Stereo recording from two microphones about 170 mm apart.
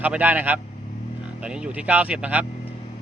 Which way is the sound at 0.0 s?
10° right (ahead or behind).